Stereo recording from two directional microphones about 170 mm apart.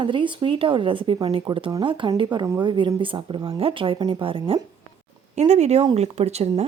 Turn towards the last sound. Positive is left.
turn(degrees=-40)  # may be behind; listen again after turning